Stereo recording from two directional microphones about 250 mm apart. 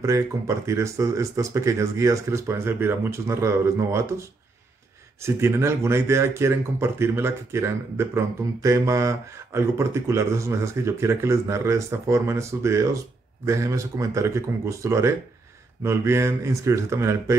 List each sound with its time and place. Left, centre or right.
0.7 s speech: centre
5.2 s speech: centre